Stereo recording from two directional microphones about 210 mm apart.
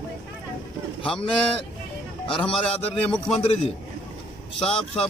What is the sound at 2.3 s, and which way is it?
Speech, 25° left (ahead or behind).